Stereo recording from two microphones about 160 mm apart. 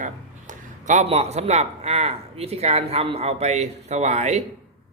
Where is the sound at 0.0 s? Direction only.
50° right (ahead or behind).